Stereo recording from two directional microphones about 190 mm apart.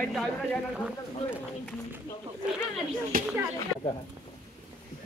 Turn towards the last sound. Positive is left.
turn(degrees=-50)  # may be behind; listen again after turning